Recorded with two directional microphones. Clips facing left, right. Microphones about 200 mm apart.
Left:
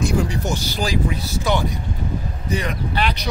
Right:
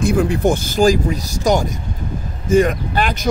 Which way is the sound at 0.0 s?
55° right (ahead or behind).